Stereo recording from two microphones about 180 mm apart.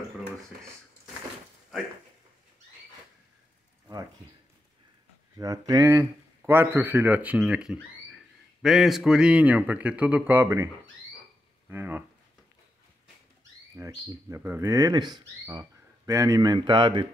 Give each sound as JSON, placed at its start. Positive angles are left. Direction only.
{"t": 5.4, "sound": "speech", "side_deg": -20}
{"t": 11.7, "sound": "speech", "side_deg": -10}
{"t": 13.7, "sound": "speech", "side_deg": -20}